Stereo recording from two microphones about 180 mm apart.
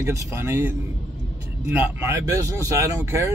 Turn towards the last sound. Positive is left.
turn(degrees=-15)  # may be behind; listen again after turning